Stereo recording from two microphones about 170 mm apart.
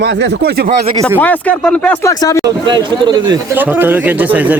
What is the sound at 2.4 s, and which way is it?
Speech, 25° right (ahead or behind).